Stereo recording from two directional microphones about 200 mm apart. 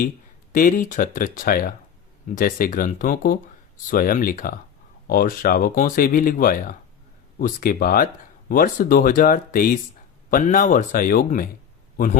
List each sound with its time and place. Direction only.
0.5 s speech: 40° left (ahead or behind)